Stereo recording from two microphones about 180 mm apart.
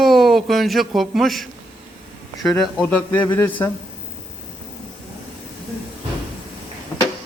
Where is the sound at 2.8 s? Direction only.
10° left (ahead or behind).